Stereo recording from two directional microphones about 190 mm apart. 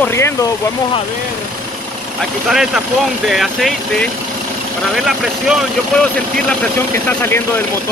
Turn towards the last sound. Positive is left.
turn(degrees=10)  # may be behind; listen again after turning